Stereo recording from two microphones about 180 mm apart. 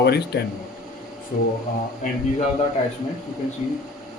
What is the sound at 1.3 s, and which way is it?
Speech, 50° left (ahead or behind).